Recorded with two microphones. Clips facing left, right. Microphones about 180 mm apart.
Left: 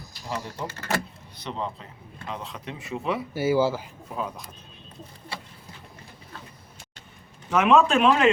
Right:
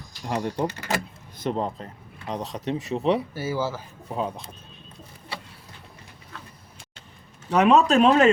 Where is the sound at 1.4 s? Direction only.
45° right (ahead or behind).